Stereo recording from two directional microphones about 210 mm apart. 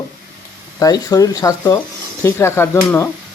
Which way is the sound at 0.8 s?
20° left (ahead or behind).